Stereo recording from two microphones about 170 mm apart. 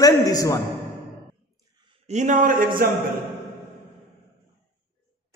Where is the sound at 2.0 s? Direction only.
45° right (ahead or behind).